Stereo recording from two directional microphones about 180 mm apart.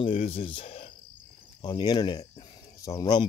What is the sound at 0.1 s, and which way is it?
Speech, 35° left (ahead or behind).